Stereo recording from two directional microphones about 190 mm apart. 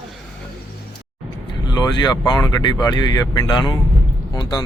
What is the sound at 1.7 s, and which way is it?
Speech, 20° left (ahead or behind).